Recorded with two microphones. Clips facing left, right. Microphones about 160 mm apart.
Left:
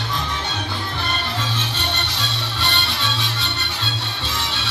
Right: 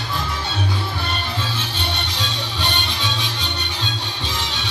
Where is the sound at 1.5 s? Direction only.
10° right (ahead or behind).